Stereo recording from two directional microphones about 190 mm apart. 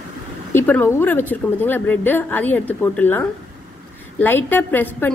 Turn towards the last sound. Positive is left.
turn(degrees=10)  # may be behind; listen again after turning